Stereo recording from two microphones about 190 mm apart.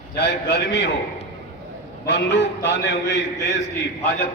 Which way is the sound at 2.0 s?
65° left (ahead or behind).